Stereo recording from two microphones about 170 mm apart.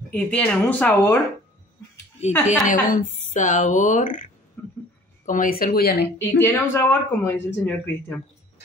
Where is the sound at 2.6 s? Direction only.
50° left (ahead or behind).